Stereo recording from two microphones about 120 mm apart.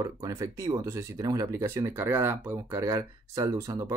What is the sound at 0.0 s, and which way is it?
Speech, 30° right (ahead or behind).